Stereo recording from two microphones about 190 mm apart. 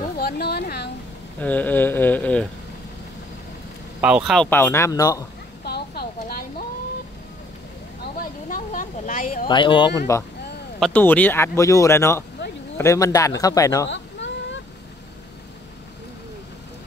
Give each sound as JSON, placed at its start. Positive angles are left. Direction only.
{"t": 0.2, "sound": "speech", "side_deg": 55}
{"t": 1.4, "sound": "speech", "side_deg": 10}
{"t": 4.0, "sound": "speech", "side_deg": -5}
{"t": 5.6, "sound": "a sound", "side_deg": 55}
{"t": 8.0, "sound": "a sound", "side_deg": 50}
{"t": 9.5, "sound": "speech", "side_deg": 25}
{"t": 13.8, "sound": "baby cry", "side_deg": 75}